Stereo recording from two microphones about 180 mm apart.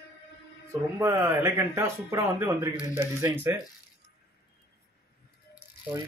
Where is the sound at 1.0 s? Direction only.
15° right (ahead or behind).